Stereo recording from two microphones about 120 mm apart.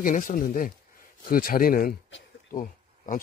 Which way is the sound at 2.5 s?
90° left.